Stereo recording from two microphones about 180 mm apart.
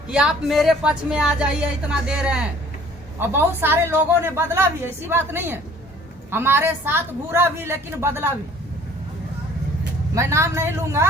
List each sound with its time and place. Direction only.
0.1 s a woman's voice: 5° right (ahead or behind)
10.2 s a woman's voice: 15° right (ahead or behind)